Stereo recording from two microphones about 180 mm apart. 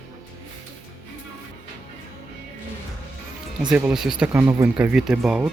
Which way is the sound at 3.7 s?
5° right (ahead or behind).